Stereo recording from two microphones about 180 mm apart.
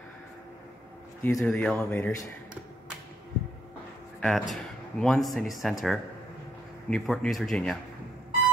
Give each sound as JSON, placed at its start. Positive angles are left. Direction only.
{"t": 1.2, "sound": "speech", "side_deg": 10}
{"t": 4.2, "sound": "speech", "side_deg": 5}